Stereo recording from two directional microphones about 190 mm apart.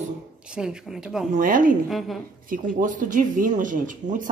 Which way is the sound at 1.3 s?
45° right (ahead or behind).